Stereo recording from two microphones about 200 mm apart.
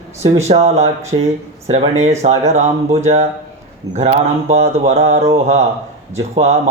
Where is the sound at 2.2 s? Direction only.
35° right (ahead or behind).